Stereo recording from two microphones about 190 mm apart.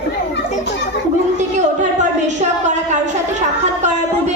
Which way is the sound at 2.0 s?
40° right (ahead or behind).